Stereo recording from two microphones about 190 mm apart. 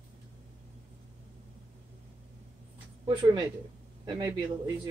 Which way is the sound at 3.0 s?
20° right (ahead or behind).